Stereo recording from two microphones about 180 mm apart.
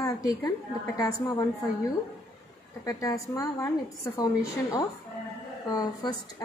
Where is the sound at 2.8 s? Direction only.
20° left (ahead or behind).